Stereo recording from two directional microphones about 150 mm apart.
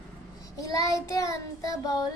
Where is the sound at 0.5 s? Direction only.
20° left (ahead or behind).